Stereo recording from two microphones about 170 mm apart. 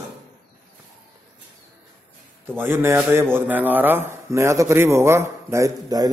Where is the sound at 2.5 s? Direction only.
15° right (ahead or behind).